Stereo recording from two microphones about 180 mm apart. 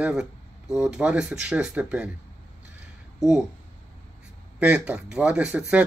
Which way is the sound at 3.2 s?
Centre (ahead or behind).